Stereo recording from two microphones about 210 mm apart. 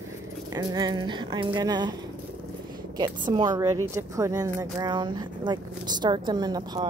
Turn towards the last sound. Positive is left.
turn(degrees=-20)  # may be behind; listen again after turning